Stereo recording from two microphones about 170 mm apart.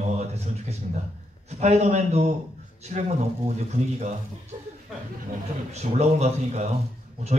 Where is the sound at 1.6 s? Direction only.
40° right (ahead or behind).